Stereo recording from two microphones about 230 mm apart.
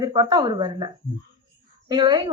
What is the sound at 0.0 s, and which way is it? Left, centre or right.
Speech, centre.